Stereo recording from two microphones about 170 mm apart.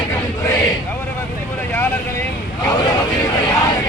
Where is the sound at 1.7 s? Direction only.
15° left (ahead or behind).